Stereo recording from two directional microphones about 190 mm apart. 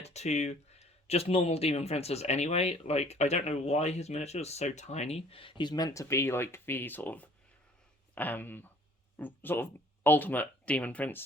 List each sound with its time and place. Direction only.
0.0 s speech: 35° left (ahead or behind); by 11.2 s 10° left (ahead or behind)